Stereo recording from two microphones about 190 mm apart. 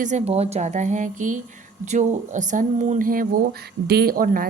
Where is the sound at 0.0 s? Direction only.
40° right (ahead or behind).